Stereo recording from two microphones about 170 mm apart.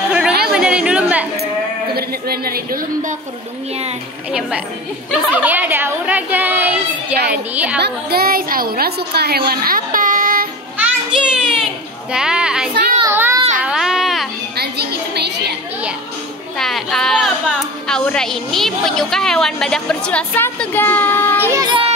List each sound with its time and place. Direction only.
0.5 s chatter: 5° right (ahead or behind)
2.0 s a woman's voice: 65° right (ahead or behind)
4.3 s a woman's voice: 5° right (ahead or behind)
7.8 s a woman's voice: 65° right (ahead or behind)
10.8 s children playing: 5° right (ahead or behind)
13.0 s child singing: 15° right (ahead or behind)
13.6 s baby cry: 5° right (ahead or behind)
14.6 s a sound: 75° right (ahead or behind)
16.5 s a woman's voice: centre (ahead or behind)
21.5 s speech: 25° right (ahead or behind)